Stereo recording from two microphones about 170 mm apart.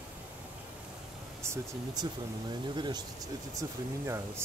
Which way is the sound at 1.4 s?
25° right (ahead or behind).